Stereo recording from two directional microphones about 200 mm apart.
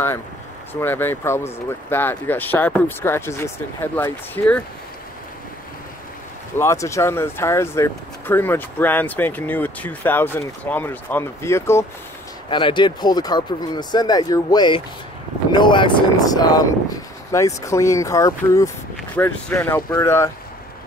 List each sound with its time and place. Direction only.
0.7 s speech: 10° left (ahead or behind)
6.6 s speech: 15° left (ahead or behind)
12.4 s speech: 25° left (ahead or behind)